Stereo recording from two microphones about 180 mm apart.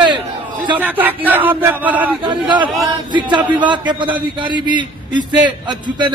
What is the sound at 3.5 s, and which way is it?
A man's voice, 25° right (ahead or behind).